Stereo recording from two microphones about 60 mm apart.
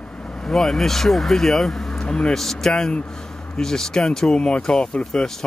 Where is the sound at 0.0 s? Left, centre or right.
Centre.